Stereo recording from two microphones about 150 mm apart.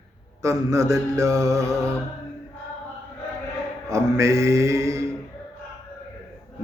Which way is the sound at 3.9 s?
20° right (ahead or behind).